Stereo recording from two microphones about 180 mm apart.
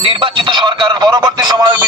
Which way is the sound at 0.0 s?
30° right (ahead or behind).